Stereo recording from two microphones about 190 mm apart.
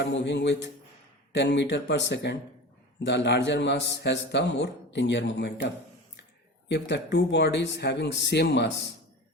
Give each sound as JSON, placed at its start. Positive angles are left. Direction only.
{"t": 0.0, "sound": "a man's voice", "side_deg": 65}